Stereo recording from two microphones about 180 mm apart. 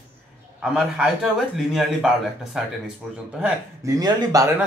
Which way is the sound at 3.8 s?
20° right (ahead or behind).